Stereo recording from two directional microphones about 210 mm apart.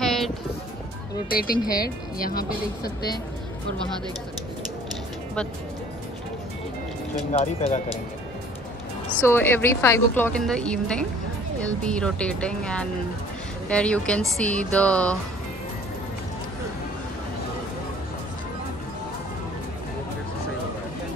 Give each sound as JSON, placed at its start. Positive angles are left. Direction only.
{"t": 0.0, "sound": "music", "side_deg": 0}
{"t": 1.3, "sound": "speech", "side_deg": 45}
{"t": 1.6, "sound": "a woman's voice", "side_deg": 15}
{"t": 2.1, "sound": "speech", "side_deg": 45}
{"t": 7.3, "sound": "speech", "side_deg": 30}
{"t": 9.2, "sound": "a woman's voice", "side_deg": 10}